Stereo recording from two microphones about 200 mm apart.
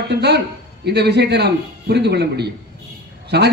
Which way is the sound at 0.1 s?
55° right (ahead or behind).